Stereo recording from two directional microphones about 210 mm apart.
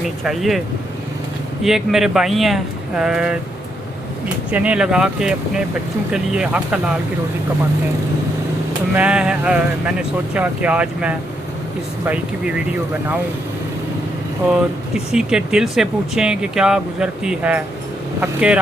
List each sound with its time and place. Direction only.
0.3 s speech: centre (ahead or behind)
1.6 s speech: centre (ahead or behind)
4.5 s speech: 5° right (ahead or behind)
9.0 s speech: 5° right (ahead or behind)
14.4 s speech: 5° right (ahead or behind)